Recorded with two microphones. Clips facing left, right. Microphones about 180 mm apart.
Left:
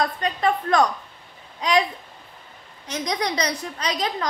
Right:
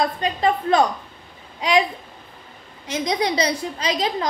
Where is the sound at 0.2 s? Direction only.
30° right (ahead or behind).